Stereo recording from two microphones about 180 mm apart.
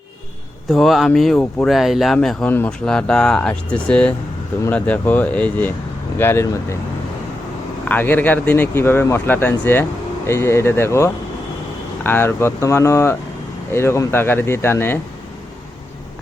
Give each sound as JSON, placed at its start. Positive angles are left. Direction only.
{"t": 0.7, "sound": "speech", "side_deg": 0}
{"t": 7.9, "sound": "speech", "side_deg": 10}